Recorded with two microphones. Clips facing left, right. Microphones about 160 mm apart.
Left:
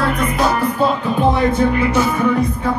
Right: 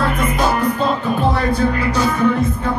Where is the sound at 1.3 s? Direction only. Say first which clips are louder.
Left 2 dB; 20° left (ahead or behind).